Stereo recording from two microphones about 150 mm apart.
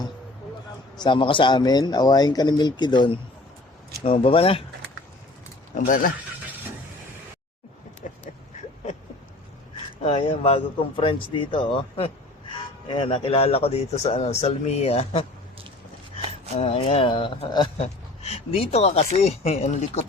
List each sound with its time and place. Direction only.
0.9 s speech: 30° left (ahead or behind)
5.7 s speech: 60° left (ahead or behind)
8.0 s a sound: 55° left (ahead or behind)
10.0 s speech: 40° left (ahead or behind)
16.6 s speech: 40° left (ahead or behind)
17.7 s speech: 45° left (ahead or behind)